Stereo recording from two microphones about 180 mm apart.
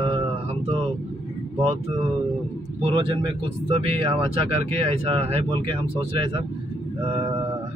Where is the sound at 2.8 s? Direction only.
30° right (ahead or behind).